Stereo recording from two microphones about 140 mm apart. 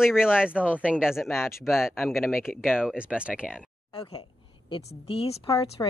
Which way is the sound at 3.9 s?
40° left (ahead or behind).